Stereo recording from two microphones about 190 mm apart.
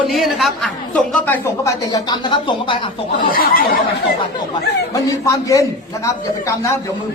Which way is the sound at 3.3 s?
50° left (ahead or behind).